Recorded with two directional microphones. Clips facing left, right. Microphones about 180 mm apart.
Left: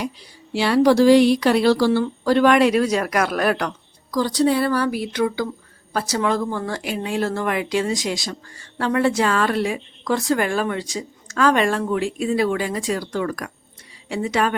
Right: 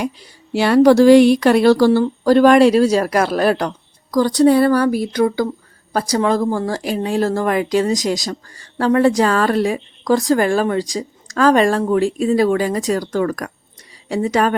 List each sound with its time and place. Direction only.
0.5 s speech: 45° right (ahead or behind); by 3.8 s 30° right (ahead or behind)
4.1 s a woman's voice: 45° right (ahead or behind)